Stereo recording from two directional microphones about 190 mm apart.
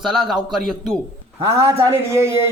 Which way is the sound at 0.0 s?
5° right (ahead or behind).